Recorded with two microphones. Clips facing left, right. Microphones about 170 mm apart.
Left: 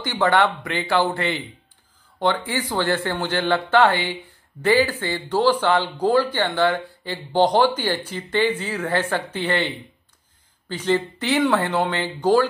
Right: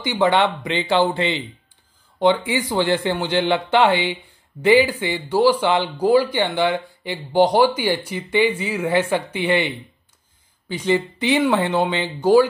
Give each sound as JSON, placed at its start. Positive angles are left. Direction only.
{"t": 0.0, "sound": "speech", "side_deg": -15}